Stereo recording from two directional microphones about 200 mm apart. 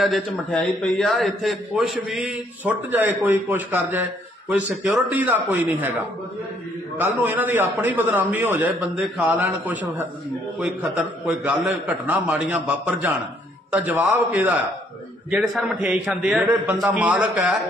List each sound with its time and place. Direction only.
0.0 s a man's voice: centre (ahead or behind)